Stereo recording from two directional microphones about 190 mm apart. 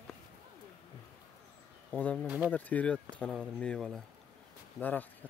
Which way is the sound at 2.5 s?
10° left (ahead or behind).